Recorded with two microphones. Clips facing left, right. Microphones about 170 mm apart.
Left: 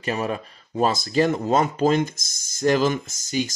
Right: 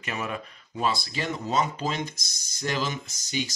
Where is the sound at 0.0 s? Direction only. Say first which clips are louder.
Left 7 dB; 35° left (ahead or behind).